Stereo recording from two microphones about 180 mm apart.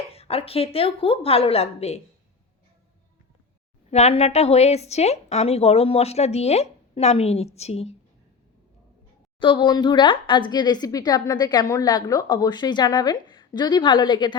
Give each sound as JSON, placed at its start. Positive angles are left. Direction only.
{"t": 0.1, "sound": "a woman's voice", "side_deg": 35}
{"t": 3.8, "sound": "a woman's voice", "side_deg": 35}
{"t": 9.4, "sound": "a woman's voice", "side_deg": 25}